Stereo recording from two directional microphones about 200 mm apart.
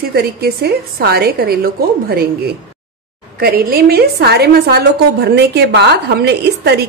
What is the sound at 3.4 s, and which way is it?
A woman's voice, 50° right (ahead or behind).